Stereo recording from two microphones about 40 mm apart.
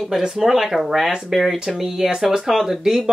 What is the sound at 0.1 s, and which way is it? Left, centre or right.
Speech, centre.